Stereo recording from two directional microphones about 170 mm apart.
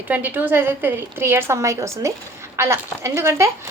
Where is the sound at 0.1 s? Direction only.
10° right (ahead or behind).